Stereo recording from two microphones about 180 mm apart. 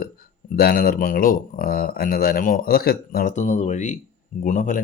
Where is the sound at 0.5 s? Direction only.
60° left (ahead or behind).